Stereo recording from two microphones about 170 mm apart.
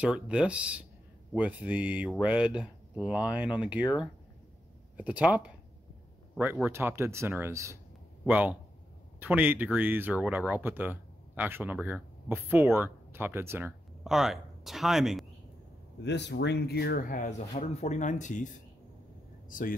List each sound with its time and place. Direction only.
0.0 s speech: 5° right (ahead or behind)
4.9 s speech: 10° right (ahead or behind)
14.0 s speech: centre (ahead or behind)
16.0 s speech: 90° left; by 19.7 s 50° left (ahead or behind)